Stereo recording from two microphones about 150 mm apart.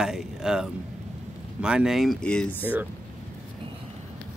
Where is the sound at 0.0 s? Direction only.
5° right (ahead or behind).